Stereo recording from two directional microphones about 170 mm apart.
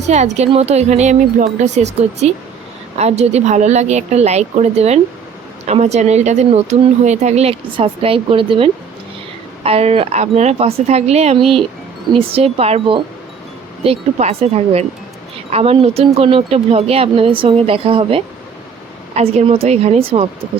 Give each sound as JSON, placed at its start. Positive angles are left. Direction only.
{"t": 0.1, "sound": "speech", "side_deg": -40}